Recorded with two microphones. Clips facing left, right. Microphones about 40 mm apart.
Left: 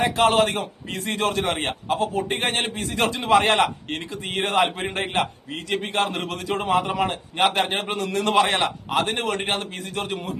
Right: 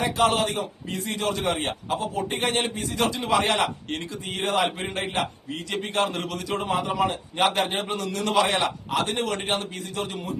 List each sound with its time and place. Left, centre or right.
0.0 s a man's voice: left